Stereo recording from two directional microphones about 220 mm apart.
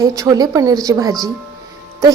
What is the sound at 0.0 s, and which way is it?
A woman's voice, 15° right (ahead or behind).